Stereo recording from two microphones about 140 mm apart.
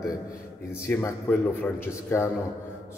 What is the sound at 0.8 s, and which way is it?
A man's voice, 15° left (ahead or behind).